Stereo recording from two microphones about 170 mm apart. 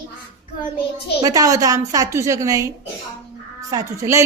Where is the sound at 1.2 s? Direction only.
20° right (ahead or behind).